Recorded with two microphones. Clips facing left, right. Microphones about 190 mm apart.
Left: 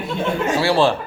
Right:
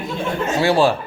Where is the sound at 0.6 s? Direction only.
15° right (ahead or behind).